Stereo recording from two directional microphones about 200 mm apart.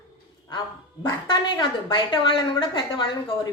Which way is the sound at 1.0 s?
20° left (ahead or behind).